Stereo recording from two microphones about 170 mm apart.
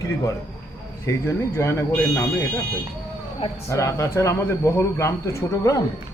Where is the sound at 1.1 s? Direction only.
15° left (ahead or behind).